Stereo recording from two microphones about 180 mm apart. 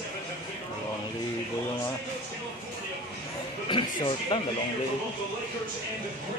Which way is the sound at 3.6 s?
30° left (ahead or behind).